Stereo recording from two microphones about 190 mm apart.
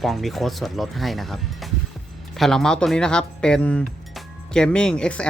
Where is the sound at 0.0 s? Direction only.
Centre (ahead or behind).